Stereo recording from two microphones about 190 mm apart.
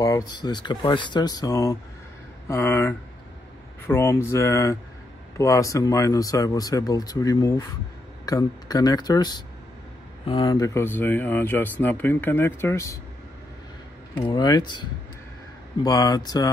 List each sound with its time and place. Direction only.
0.0 s speech: 20° left (ahead or behind)
14.1 s speech: 25° left (ahead or behind)